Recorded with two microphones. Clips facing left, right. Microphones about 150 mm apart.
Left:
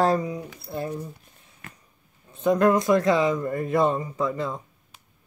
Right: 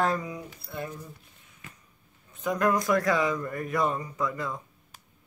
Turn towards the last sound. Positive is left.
turn(degrees=25)  # may be behind; listen again after turning